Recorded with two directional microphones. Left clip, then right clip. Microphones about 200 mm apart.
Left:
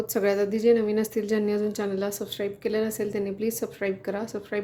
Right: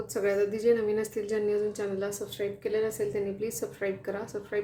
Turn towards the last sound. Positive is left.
turn(degrees=30)  # may be behind; listen again after turning